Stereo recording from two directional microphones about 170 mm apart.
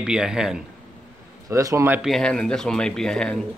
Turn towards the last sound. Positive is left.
turn(degrees=5)  # may be behind; listen again after turning